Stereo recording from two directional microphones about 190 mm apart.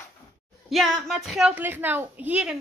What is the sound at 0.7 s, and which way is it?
A woman's voice, centre (ahead or behind).